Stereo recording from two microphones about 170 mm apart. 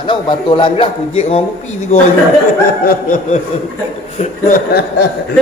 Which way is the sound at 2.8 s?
45° left (ahead or behind).